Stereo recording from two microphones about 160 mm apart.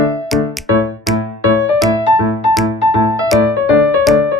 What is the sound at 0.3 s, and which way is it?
Music, centre (ahead or behind).